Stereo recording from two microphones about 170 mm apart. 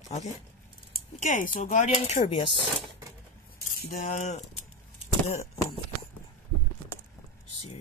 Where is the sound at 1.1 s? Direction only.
50° left (ahead or behind).